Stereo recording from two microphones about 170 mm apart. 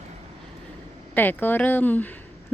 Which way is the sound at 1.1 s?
10° left (ahead or behind).